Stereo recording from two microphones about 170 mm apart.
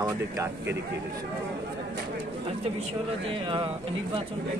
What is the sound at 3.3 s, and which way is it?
Speech, 30° right (ahead or behind).